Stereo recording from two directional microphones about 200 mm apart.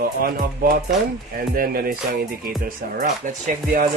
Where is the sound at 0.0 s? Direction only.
50° right (ahead or behind).